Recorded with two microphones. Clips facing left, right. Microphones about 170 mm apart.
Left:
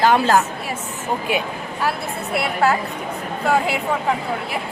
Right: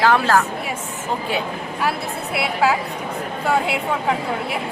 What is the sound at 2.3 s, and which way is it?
A woman's voice, centre (ahead or behind).